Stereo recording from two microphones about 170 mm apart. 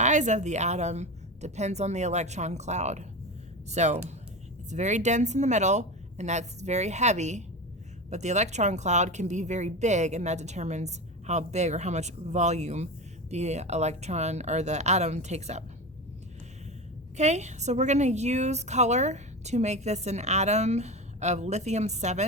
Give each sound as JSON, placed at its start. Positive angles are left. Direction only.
{"t": 0.0, "sound": "a woman's voice", "side_deg": -45}
{"t": 17.2, "sound": "a woman's voice", "side_deg": -40}